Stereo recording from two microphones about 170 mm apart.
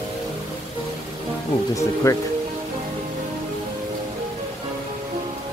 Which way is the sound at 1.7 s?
20° left (ahead or behind).